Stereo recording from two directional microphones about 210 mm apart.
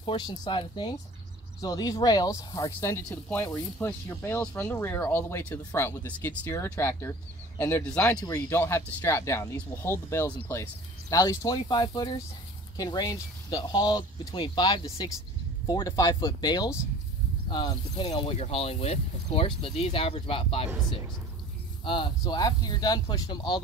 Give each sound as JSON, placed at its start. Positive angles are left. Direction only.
{"t": 0.0, "sound": "speech", "side_deg": 20}
{"t": 21.8, "sound": "speech", "side_deg": 20}